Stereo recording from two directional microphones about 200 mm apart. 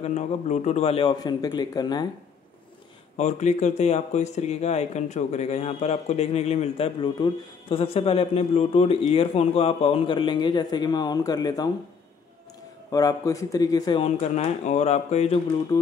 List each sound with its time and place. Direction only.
0.0 s speech: 35° left (ahead or behind)
3.2 s speech: 35° left (ahead or behind); by 11.7 s 20° left (ahead or behind)
12.9 s speech: 15° left (ahead or behind)
14.0 s speech: 35° left (ahead or behind)